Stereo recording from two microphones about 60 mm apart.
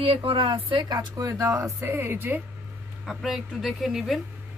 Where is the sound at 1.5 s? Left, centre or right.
Right.